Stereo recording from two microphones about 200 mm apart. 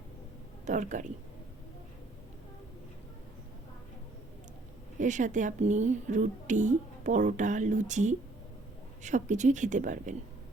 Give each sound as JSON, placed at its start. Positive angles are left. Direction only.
{"t": 0.6, "sound": "speech", "side_deg": -35}
{"t": 4.9, "sound": "speech", "side_deg": -40}